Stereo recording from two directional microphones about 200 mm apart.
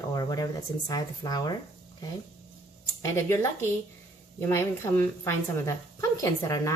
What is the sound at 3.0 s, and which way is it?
A woman's voice, 15° left (ahead or behind).